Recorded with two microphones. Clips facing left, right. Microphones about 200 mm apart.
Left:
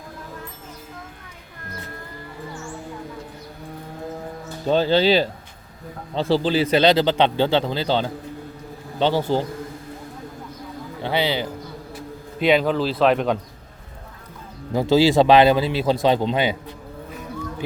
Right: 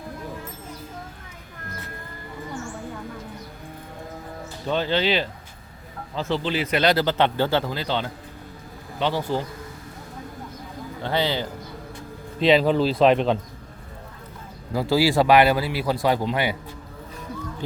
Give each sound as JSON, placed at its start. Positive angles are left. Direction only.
{"t": 4.6, "sound": "a man's voice", "side_deg": 35}
{"t": 11.0, "sound": "a man's voice", "side_deg": 10}
{"t": 12.4, "sound": "a man's voice", "side_deg": 0}
{"t": 14.7, "sound": "a man's voice", "side_deg": 25}